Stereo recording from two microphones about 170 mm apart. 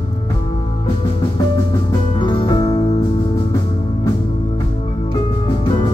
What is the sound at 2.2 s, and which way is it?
Music, 30° left (ahead or behind).